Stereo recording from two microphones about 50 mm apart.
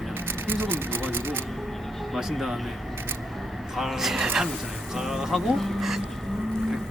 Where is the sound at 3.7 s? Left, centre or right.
Centre.